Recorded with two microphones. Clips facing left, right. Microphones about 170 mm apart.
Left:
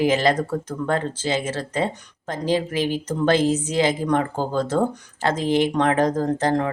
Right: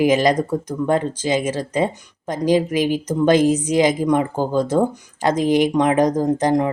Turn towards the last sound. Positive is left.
turn(degrees=-15)  # may be behind; listen again after turning